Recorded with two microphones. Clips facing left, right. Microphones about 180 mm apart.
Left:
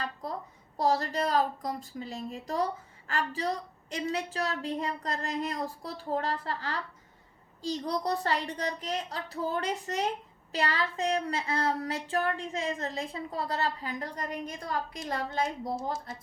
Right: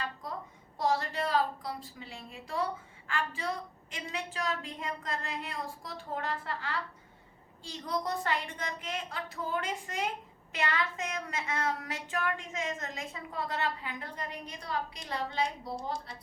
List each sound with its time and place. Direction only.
0.8 s a woman's voice: 40° left (ahead or behind)
15.4 s speech: 5° left (ahead or behind)